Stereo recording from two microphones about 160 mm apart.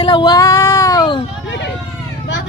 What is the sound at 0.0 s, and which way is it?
Child singing, 30° left (ahead or behind).